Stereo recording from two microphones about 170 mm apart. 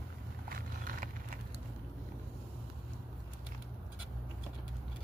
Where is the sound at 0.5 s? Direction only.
55° right (ahead or behind).